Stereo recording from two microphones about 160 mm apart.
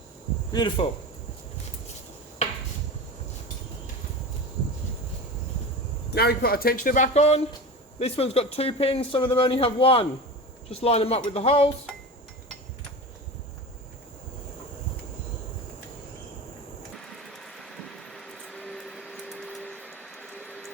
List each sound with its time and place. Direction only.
0.5 s speech: 30° left (ahead or behind)
6.1 s speech: 80° left; by 11.7 s 40° left (ahead or behind)
17.2 s a sound: centre (ahead or behind)